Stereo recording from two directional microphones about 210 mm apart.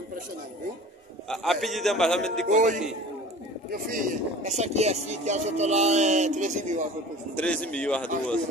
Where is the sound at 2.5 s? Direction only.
35° right (ahead or behind).